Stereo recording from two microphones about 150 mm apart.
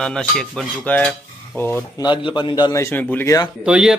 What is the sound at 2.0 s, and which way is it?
A man's voice, 30° left (ahead or behind).